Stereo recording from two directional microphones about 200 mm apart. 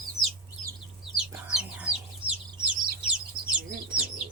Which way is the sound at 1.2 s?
5° right (ahead or behind).